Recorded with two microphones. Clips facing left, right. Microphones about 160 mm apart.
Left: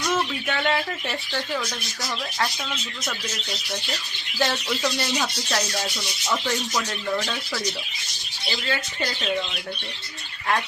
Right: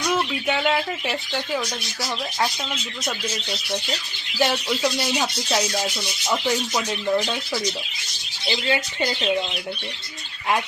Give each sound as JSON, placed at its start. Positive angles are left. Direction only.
{"t": 0.1, "sound": "speech", "side_deg": -10}
{"t": 4.4, "sound": "speech", "side_deg": -10}